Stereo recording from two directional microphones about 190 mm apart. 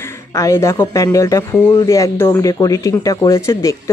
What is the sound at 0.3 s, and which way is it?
Speech, 15° left (ahead or behind).